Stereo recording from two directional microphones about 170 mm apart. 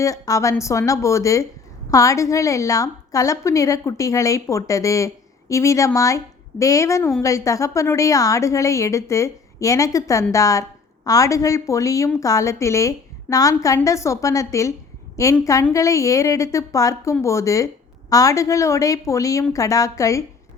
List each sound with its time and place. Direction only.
0.0 s a woman's voice: 20° left (ahead or behind)